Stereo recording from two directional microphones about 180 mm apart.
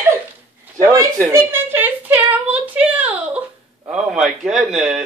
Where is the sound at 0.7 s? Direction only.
15° right (ahead or behind).